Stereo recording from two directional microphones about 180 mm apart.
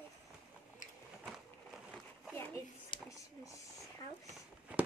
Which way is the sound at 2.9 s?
30° left (ahead or behind).